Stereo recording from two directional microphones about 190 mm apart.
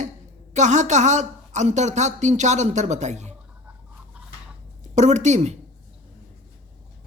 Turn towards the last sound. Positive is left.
turn(degrees=-40)  # may be behind; listen again after turning